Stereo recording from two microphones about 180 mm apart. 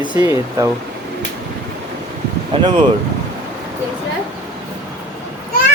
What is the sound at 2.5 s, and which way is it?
Speech, 30° right (ahead or behind).